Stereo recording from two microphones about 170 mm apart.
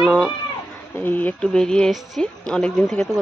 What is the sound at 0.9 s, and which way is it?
Speech, 10° left (ahead or behind).